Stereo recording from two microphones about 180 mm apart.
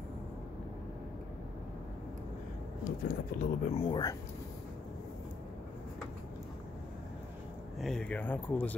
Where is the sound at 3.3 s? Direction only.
50° left (ahead or behind).